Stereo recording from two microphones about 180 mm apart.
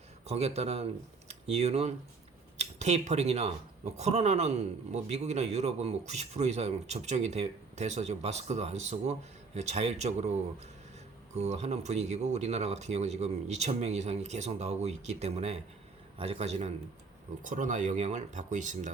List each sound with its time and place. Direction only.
0.3 s speech: 35° right (ahead or behind)